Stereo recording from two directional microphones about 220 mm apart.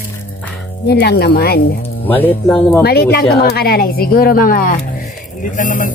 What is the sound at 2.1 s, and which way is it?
Speech, 10° left (ahead or behind).